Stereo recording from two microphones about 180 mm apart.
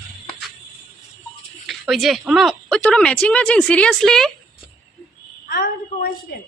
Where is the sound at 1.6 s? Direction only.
Centre (ahead or behind).